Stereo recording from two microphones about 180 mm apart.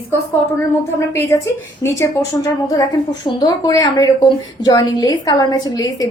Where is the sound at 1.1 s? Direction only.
15° left (ahead or behind).